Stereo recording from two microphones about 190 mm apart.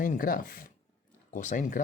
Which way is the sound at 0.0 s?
45° left (ahead or behind).